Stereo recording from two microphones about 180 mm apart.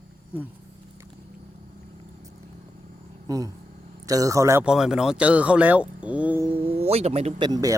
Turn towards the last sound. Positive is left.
turn(degrees=-20)  # may be behind; listen again after turning